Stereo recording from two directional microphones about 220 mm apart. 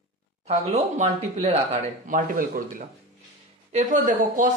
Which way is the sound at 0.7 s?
30° right (ahead or behind).